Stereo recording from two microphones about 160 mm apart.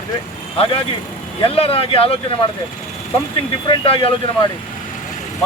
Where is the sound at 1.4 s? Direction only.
35° left (ahead or behind).